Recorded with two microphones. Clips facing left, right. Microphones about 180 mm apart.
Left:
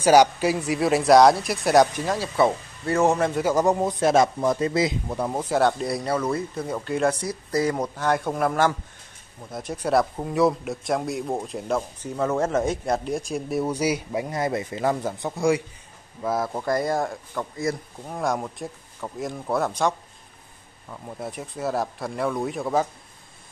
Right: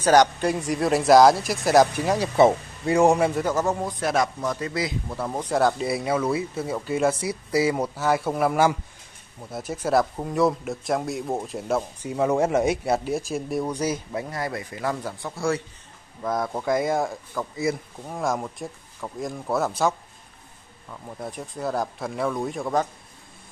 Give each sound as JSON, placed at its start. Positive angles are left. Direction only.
{"t": 0.0, "sound": "speech", "side_deg": 10}
{"t": 2.0, "sound": "a man's voice", "side_deg": -15}
{"t": 2.3, "sound": "speech", "side_deg": -25}
{"t": 2.9, "sound": "a man's voice", "side_deg": -10}
{"t": 3.4, "sound": "a man's voice", "side_deg": 15}
{"t": 5.4, "sound": "speech", "side_deg": 0}
{"t": 16.2, "sound": "speech", "side_deg": 5}